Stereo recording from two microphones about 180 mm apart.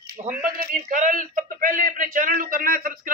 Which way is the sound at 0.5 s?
50° right (ahead or behind).